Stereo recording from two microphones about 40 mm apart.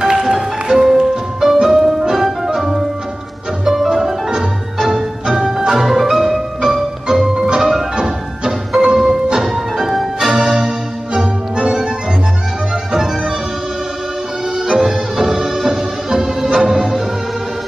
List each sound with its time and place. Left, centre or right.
0.0 s music: centre
11.1 s music: right
12.9 s music: centre
14.6 s music: centre